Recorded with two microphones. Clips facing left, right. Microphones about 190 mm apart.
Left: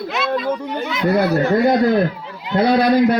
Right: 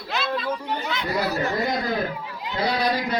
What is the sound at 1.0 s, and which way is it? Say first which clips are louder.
Speech: left 11 dB; 55° left (ahead or behind).